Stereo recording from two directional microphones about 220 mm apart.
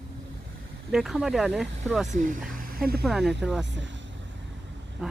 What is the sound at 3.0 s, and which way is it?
Speech, centre (ahead or behind).